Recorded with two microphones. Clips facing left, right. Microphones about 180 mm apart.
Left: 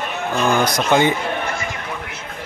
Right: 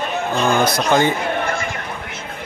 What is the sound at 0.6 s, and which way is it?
Speech, 15° left (ahead or behind).